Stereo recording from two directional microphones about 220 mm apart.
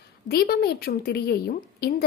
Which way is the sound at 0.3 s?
45° left (ahead or behind).